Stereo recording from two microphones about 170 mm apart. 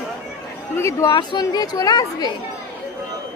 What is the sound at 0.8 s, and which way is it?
Speech, 20° left (ahead or behind).